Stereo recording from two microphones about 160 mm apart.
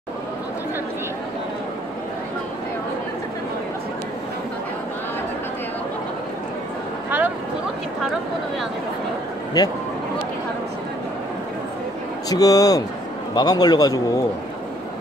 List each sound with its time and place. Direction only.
9.6 s a man's voice: 25° left (ahead or behind)
12.3 s a man's voice: 20° left (ahead or behind)